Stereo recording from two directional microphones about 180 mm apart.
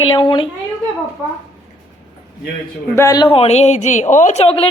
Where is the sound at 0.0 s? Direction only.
30° left (ahead or behind).